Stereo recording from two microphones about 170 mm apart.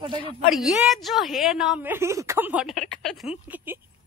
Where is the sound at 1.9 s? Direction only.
15° right (ahead or behind); by 3.3 s centre (ahead or behind).